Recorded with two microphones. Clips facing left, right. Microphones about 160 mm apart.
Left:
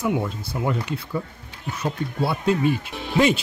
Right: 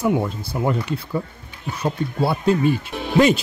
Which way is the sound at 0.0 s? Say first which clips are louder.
Right 3 dB; 40° right (ahead or behind).